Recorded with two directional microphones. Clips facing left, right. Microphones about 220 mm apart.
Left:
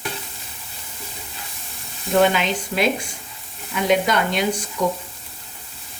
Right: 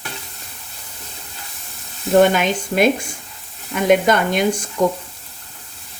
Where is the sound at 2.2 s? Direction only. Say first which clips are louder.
Right 4 dB; 50° right (ahead or behind).